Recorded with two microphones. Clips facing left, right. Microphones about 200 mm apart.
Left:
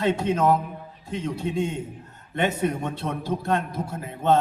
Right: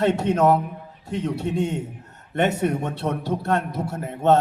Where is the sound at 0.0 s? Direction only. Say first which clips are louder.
Right 3 dB; 65° right (ahead or behind).